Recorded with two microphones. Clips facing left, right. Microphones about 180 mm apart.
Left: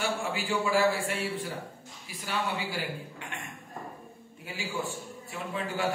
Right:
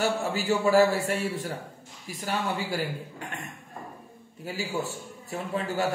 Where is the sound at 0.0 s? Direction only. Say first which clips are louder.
Right 5 dB; 40° right (ahead or behind).